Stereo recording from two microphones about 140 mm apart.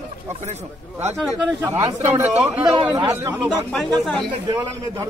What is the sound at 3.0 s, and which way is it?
Speech, 25° right (ahead or behind).